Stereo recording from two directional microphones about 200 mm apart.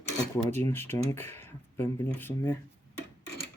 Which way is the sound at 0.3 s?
10° left (ahead or behind).